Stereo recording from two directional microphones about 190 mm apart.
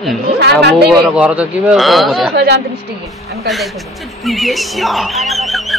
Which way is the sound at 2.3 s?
60° right (ahead or behind).